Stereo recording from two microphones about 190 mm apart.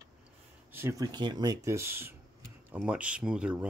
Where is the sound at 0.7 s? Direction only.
15° right (ahead or behind).